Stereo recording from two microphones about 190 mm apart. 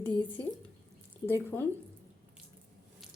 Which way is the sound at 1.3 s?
10° left (ahead or behind).